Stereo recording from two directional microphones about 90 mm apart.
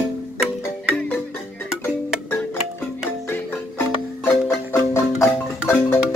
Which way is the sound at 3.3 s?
25° left (ahead or behind).